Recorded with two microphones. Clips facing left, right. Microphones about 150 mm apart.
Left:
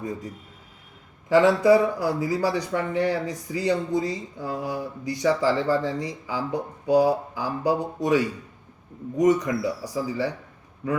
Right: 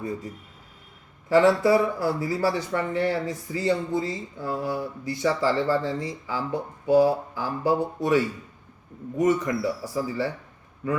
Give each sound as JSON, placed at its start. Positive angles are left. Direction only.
{"t": 1.3, "sound": "speech", "side_deg": 15}